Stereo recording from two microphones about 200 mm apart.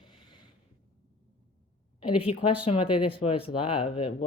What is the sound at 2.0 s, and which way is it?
Speech, 25° left (ahead or behind).